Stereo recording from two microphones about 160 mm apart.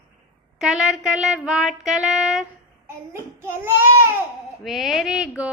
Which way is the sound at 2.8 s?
15° right (ahead or behind).